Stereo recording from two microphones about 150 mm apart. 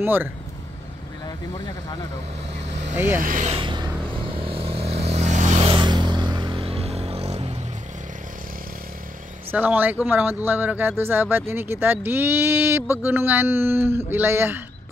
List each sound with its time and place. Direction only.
0.0 s speech: 15° right (ahead or behind)
3.2 s speech: 65° right (ahead or behind)
3.4 s a sound: 35° right (ahead or behind)
4.5 s vehicle: 40° right (ahead or behind)
5.7 s a sound: 30° right (ahead or behind)
9.5 s speech: 10° right (ahead or behind)